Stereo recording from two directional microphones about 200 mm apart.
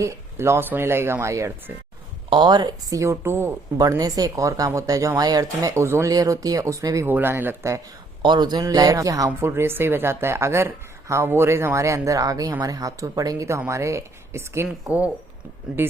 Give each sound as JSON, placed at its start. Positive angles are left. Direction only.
{"t": 0.0, "sound": "speech", "side_deg": -15}